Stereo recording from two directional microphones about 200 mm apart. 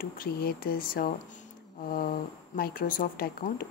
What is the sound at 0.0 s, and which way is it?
Speech, 50° left (ahead or behind).